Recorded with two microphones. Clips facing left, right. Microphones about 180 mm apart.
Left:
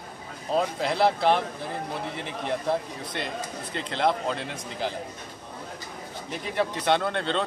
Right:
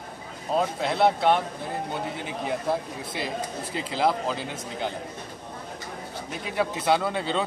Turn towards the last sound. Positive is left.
turn(degrees=-5)  # may be behind; listen again after turning